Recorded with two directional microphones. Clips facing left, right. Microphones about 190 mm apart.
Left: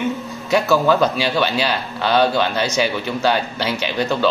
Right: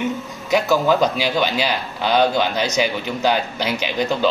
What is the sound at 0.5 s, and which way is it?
Speech, 15° right (ahead or behind).